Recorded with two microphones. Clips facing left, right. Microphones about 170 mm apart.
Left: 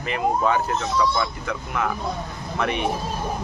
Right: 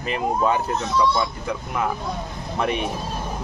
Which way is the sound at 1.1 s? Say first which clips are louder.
Right 1 dB; 20° right (ahead or behind).